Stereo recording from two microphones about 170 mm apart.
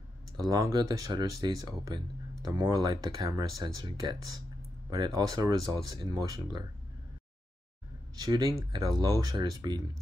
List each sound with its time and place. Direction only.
0.4 s speech: 20° right (ahead or behind)
8.2 s speech: 20° right (ahead or behind)